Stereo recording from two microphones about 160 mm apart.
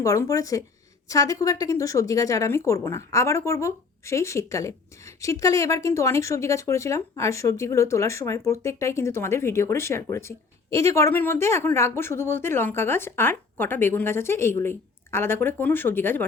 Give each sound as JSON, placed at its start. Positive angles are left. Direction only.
{"t": 0.0, "sound": "speech", "side_deg": 20}